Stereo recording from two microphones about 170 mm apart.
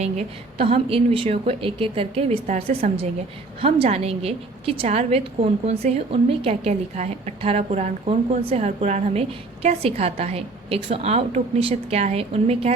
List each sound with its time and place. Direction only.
0.0 s a woman's voice: 35° right (ahead or behind)